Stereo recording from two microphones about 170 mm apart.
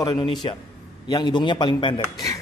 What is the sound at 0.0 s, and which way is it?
A man's voice, 25° left (ahead or behind).